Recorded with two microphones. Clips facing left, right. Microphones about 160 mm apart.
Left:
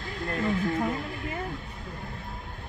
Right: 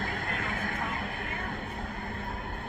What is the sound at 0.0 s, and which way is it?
Vehicle, 55° right (ahead or behind).